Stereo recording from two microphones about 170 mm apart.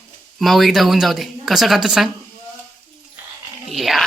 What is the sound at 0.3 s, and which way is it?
A woman's voice, centre (ahead or behind).